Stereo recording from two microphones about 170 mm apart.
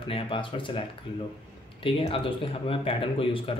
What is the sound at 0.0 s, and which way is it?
A man's voice, 30° left (ahead or behind).